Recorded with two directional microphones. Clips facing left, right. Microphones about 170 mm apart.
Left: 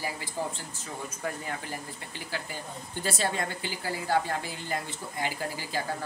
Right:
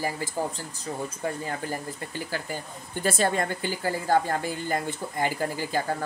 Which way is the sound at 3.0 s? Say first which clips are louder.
Right 6 dB; 50° right (ahead or behind).